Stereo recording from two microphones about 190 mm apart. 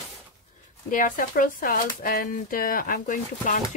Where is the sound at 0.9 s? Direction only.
45° left (ahead or behind).